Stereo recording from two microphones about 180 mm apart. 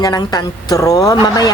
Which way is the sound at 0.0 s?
20° left (ahead or behind).